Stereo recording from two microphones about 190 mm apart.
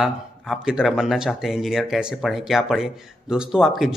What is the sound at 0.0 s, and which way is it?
Speech, 5° right (ahead or behind).